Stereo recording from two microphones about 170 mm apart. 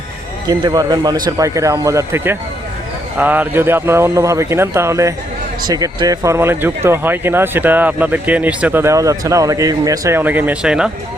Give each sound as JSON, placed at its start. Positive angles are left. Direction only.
{"t": 0.4, "sound": "speech", "side_deg": -20}